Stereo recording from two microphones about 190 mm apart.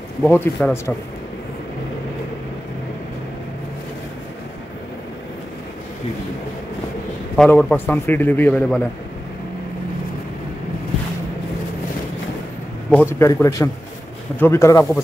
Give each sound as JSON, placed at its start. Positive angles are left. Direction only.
{"t": 0.2, "sound": "a man's voice", "side_deg": 10}
{"t": 7.3, "sound": "a man's voice", "side_deg": 10}
{"t": 13.2, "sound": "a man's voice", "side_deg": 15}